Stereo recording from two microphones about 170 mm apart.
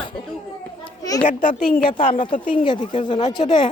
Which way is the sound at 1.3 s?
55° left (ahead or behind).